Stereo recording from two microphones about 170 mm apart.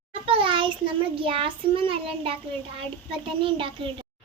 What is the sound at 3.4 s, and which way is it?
Speech, 30° right (ahead or behind).